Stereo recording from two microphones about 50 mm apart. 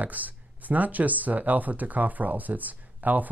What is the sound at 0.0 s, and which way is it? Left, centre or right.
Speech, right.